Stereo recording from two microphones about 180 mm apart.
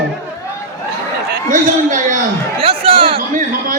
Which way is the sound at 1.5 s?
45° right (ahead or behind).